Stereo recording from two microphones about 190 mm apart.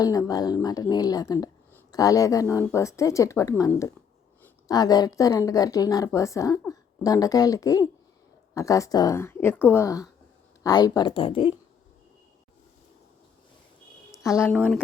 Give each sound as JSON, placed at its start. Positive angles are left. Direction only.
{"t": 0.0, "sound": "a woman's voice", "side_deg": 20}
{"t": 14.2, "sound": "a woman's voice", "side_deg": 15}
{"t": 14.5, "sound": "speech", "side_deg": 0}